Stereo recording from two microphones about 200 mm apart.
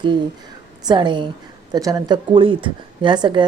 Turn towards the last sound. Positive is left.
turn(degrees=-25)  # may be behind; listen again after turning